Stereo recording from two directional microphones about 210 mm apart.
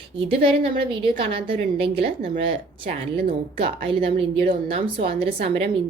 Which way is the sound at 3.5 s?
25° right (ahead or behind).